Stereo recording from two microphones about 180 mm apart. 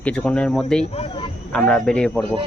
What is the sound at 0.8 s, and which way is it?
Speech, 35° left (ahead or behind).